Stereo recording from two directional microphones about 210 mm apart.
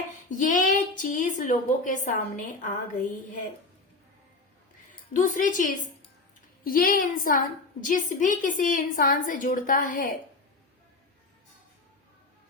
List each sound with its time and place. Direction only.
0.3 s a woman's voice: 40° left (ahead or behind)
4.9 s a woman's voice: 35° left (ahead or behind)